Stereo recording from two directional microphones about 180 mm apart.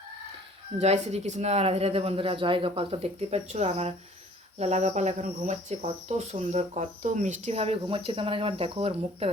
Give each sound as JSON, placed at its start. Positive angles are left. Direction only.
{"t": 0.8, "sound": "speech", "side_deg": -35}